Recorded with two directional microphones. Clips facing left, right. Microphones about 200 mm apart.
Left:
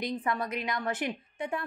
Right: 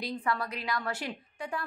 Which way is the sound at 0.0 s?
20° left (ahead or behind).